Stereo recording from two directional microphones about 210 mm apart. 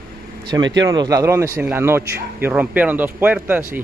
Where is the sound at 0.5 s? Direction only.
20° right (ahead or behind).